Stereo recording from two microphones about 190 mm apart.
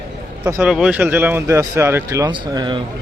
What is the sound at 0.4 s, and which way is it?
Speech, 5° right (ahead or behind).